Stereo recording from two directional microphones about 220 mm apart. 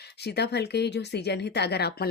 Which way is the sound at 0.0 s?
50° left (ahead or behind).